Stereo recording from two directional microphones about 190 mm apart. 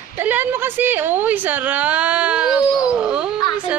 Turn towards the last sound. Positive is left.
turn(degrees=-5)  # may be behind; listen again after turning